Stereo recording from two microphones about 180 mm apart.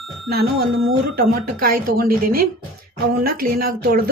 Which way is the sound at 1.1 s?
55° right (ahead or behind).